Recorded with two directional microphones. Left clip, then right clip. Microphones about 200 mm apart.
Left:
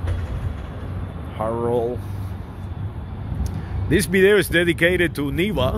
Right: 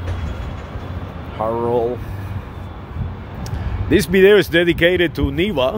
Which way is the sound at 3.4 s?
20° right (ahead or behind).